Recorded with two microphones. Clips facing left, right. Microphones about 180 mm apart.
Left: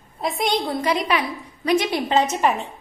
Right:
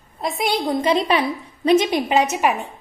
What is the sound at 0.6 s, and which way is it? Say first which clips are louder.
A woman's voice: right 4 dB; 25° right (ahead or behind).